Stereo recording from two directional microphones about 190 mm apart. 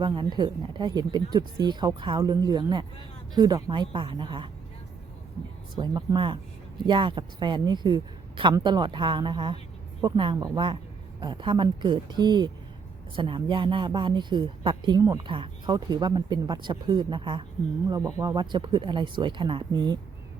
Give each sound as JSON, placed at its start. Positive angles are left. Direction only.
{"t": 0.0, "sound": "speech", "side_deg": -25}
{"t": 5.7, "sound": "speech", "side_deg": -20}